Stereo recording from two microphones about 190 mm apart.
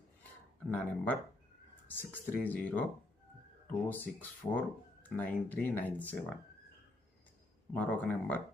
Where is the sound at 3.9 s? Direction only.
10° left (ahead or behind).